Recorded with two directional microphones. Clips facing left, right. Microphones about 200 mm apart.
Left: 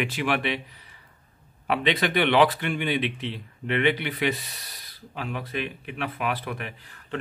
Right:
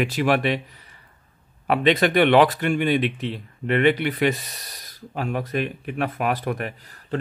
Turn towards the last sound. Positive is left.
turn(degrees=-45)  # may be behind; listen again after turning